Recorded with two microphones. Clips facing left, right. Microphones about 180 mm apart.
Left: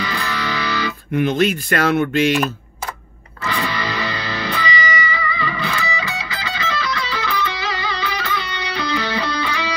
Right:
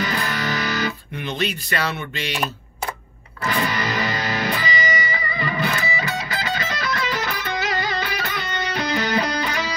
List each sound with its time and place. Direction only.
0.0 s music: 45° right (ahead or behind)
1.1 s speech: 45° left (ahead or behind)
3.4 s music: 45° right (ahead or behind)